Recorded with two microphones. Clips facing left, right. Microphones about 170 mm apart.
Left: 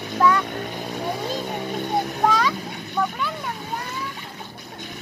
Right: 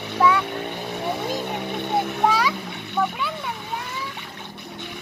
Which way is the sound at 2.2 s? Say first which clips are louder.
Left 1 dB; 5° right (ahead or behind).